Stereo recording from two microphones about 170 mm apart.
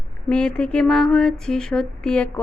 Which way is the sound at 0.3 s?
5° left (ahead or behind).